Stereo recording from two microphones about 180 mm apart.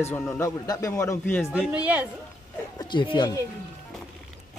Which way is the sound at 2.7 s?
25° left (ahead or behind).